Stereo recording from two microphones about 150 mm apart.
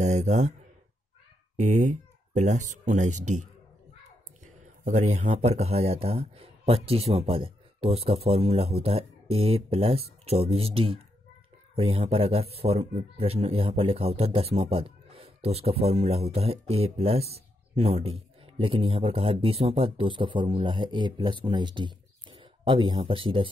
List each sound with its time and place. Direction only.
0.0 s speech: 50° right (ahead or behind)
1.6 s speech: 50° right (ahead or behind)
4.8 s a man's voice: 50° right (ahead or behind); by 23.5 s 35° right (ahead or behind)